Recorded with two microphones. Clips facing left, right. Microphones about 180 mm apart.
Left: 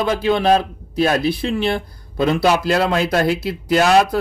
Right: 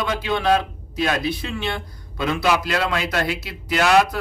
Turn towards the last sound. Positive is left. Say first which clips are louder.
# left 3 dB
turn(degrees=35)  # may be behind; listen again after turning